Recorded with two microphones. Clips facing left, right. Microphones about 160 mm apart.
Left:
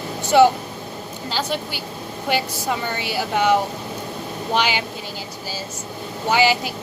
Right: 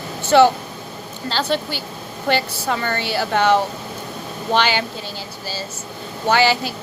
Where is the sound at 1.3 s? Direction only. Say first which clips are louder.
Right 4 dB; 10° left (ahead or behind).